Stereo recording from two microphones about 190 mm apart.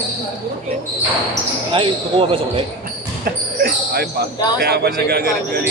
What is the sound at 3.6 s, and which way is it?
Speech, 55° right (ahead or behind).